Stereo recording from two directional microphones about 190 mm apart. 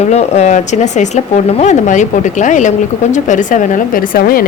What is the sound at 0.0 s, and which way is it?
A woman's voice, 35° left (ahead or behind).